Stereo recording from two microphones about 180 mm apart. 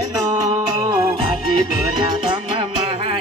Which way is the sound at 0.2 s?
15° right (ahead or behind).